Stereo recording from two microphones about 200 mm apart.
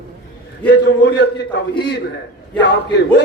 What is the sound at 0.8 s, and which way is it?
Speech, 60° left (ahead or behind).